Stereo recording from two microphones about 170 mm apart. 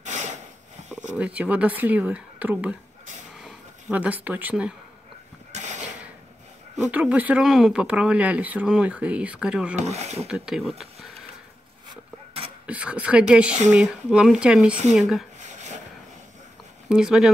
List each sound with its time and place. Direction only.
0.0 s a sound: 45° right (ahead or behind)
1.1 s speech: 5° right (ahead or behind)
5.5 s a sound: 45° right (ahead or behind)
6.8 s speech: 10° right (ahead or behind)
9.8 s speech: 40° right (ahead or behind)
10.2 s speech: centre (ahead or behind)
12.6 s speech: 5° right (ahead or behind)
15.4 s a sound: 45° right (ahead or behind)
16.9 s speech: 5° right (ahead or behind)